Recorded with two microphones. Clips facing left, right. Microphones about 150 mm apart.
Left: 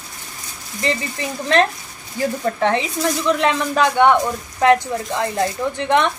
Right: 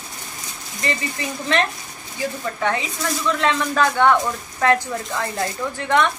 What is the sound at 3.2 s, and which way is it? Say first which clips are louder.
Speech: left 1 dB; 20° left (ahead or behind).